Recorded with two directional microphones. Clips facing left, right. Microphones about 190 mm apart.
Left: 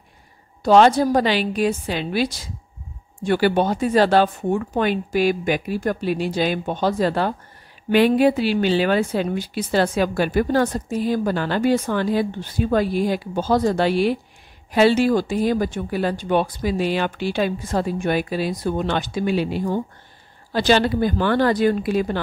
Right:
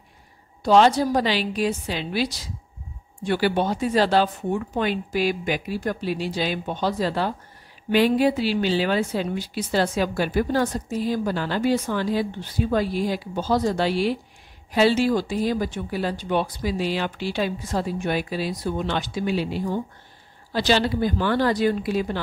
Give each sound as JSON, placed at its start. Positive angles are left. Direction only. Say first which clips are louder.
{"t": 0.7, "sound": "a woman's voice", "louder": "left 3 dB", "side_deg": 55}